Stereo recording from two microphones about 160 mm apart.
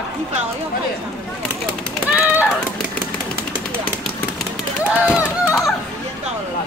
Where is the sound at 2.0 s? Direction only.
10° right (ahead or behind).